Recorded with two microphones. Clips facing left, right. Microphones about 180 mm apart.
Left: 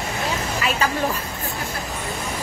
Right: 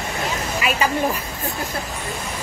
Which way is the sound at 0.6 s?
10° right (ahead or behind).